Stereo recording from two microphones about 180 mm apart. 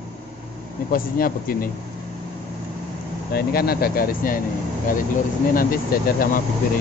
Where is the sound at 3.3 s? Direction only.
60° left (ahead or behind).